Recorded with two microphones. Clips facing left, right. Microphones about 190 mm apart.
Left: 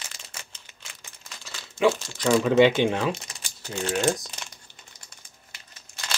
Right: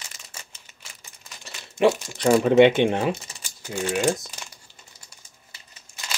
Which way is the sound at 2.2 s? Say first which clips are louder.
Right 3 dB; 35° right (ahead or behind).